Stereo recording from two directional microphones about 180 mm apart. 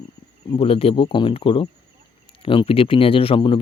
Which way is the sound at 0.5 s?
30° left (ahead or behind).